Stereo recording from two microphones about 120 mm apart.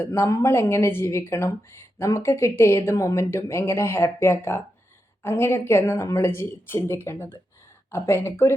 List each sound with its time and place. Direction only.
0.0 s a woman's voice: 20° left (ahead or behind)